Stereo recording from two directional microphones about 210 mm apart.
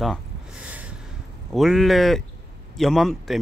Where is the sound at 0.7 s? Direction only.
5° right (ahead or behind).